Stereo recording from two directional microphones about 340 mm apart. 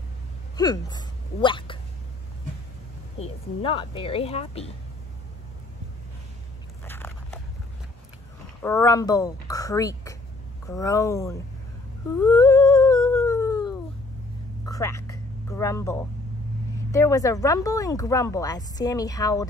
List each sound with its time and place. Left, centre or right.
0.6 s speech: centre
3.2 s speech: centre
6.8 s biting: centre
8.6 s speech: centre
12.2 s humming: centre
14.7 s a sound: centre
16.9 s speech: centre